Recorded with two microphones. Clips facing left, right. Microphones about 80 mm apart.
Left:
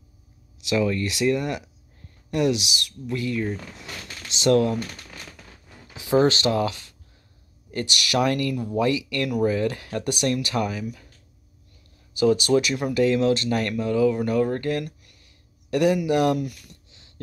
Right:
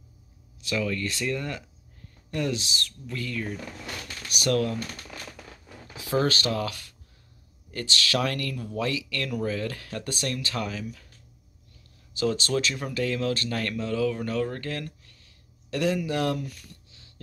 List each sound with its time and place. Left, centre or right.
0.6 s speech: left
5.9 s speech: centre
12.1 s speech: centre